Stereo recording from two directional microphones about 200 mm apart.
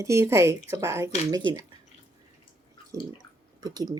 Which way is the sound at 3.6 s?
20° right (ahead or behind).